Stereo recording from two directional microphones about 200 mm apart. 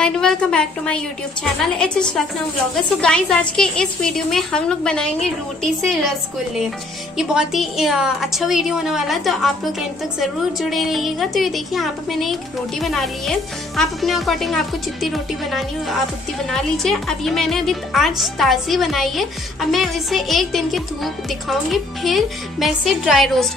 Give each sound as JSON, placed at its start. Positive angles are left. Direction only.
{"t": 0.0, "sound": "a woman's voice", "side_deg": 5}